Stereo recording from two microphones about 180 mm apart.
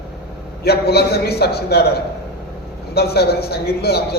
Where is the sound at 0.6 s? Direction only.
60° left (ahead or behind).